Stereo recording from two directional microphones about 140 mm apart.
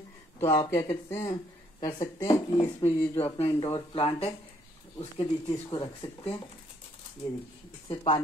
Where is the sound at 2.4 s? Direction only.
45° left (ahead or behind).